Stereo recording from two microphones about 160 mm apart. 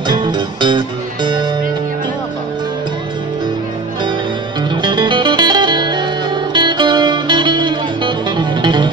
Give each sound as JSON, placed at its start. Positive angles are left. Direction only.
{"t": 0.1, "sound": "music", "side_deg": -30}
{"t": 4.6, "sound": "music", "side_deg": -30}